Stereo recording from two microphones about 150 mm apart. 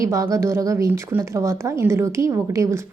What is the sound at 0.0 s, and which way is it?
Speech, 20° right (ahead or behind).